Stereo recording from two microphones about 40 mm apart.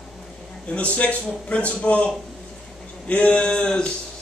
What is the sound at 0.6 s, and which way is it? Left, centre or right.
A man's voice, left.